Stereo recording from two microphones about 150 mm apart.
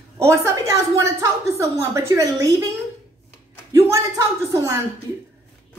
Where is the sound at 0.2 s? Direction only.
20° right (ahead or behind).